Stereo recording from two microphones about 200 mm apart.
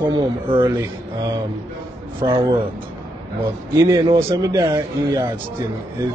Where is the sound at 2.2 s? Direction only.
25° right (ahead or behind).